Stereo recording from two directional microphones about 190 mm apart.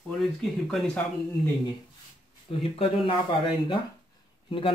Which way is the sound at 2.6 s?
30° left (ahead or behind).